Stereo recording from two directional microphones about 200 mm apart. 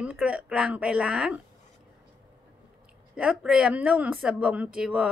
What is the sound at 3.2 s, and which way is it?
A woman's voice, 5° right (ahead or behind).